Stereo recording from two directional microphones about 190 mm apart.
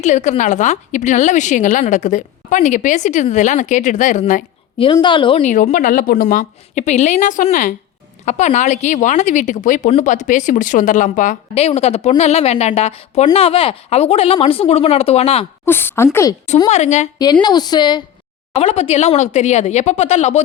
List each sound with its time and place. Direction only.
0.0 s a woman's voice: 40° left (ahead or behind)
4.8 s a woman's voice: 25° left (ahead or behind)
5.4 s a woman's voice: 40° left (ahead or behind)
15.6 s a woman's voice: 10° left (ahead or behind)
16.6 s a woman's voice: 35° left (ahead or behind)
17.4 s a woman's voice: 20° left (ahead or behind); by 20.4 s 35° left (ahead or behind)